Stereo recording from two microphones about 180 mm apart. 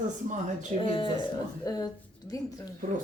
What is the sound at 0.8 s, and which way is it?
Speech, 30° left (ahead or behind).